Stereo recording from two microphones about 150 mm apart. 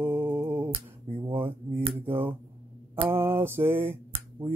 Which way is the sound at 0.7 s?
35° right (ahead or behind).